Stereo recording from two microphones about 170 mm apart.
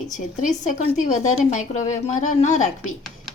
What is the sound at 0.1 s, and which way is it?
Speech, 45° left (ahead or behind).